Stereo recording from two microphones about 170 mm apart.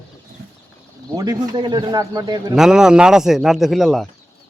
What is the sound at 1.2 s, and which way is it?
A man's voice, 25° right (ahead or behind).